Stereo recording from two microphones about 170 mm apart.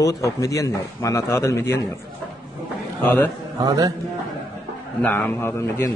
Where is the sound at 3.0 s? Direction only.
10° left (ahead or behind).